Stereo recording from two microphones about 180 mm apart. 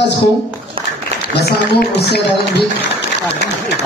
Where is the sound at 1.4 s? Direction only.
65° left (ahead or behind).